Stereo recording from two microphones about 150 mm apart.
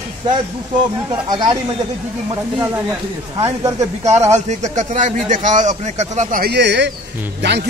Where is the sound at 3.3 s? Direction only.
20° right (ahead or behind).